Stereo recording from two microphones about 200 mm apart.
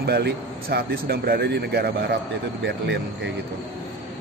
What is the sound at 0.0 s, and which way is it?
Speech, 50° right (ahead or behind).